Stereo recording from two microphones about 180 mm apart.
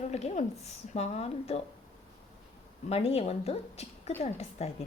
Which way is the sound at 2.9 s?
35° left (ahead or behind).